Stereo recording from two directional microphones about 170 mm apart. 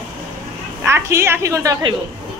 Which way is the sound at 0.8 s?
15° right (ahead or behind).